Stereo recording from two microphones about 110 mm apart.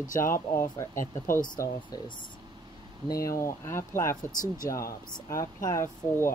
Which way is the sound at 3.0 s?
30° left (ahead or behind).